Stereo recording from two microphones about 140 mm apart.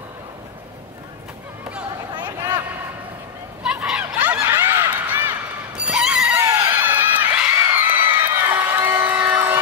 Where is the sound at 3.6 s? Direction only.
5° right (ahead or behind).